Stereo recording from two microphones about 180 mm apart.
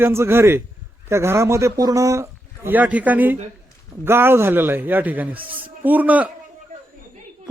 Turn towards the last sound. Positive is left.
turn(degrees=-10)  # may be behind; listen again after turning